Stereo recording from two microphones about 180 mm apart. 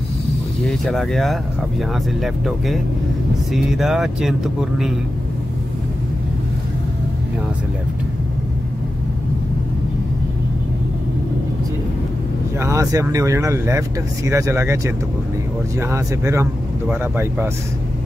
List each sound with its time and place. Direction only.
0.7 s speech: centre (ahead or behind)
12.5 s speech: 15° right (ahead or behind)
15.8 s speech: 15° right (ahead or behind)